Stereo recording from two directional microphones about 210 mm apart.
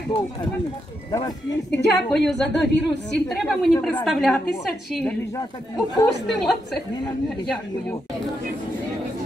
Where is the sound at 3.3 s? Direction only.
Centre (ahead or behind).